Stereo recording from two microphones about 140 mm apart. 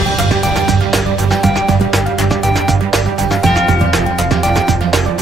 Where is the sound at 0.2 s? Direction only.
Centre (ahead or behind).